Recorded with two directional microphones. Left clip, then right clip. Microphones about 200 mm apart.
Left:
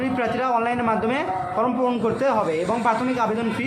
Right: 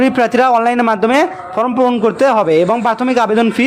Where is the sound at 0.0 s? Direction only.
50° right (ahead or behind).